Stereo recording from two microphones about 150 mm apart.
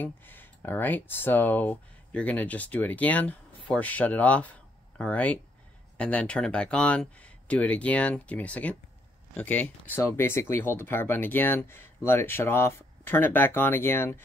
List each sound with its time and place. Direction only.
0.0 s speech: 10° left (ahead or behind)